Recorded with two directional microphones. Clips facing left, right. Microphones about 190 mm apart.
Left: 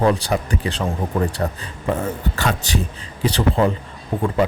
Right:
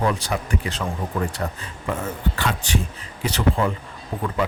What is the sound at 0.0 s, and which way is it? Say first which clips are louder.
Speech: left 5 dB; 35° left (ahead or behind).